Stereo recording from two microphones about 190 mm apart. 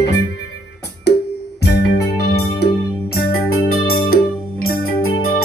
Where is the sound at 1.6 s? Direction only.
55° left (ahead or behind).